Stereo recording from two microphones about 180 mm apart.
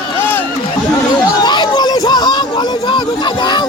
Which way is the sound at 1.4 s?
25° left (ahead or behind).